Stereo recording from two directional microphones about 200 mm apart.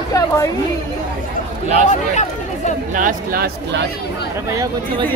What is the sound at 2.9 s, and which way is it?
Speech, 45° right (ahead or behind).